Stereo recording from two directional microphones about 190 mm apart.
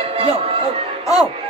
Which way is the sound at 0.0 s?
30° right (ahead or behind).